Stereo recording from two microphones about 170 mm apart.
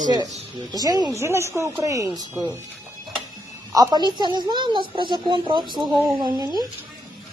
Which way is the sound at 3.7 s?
25° right (ahead or behind).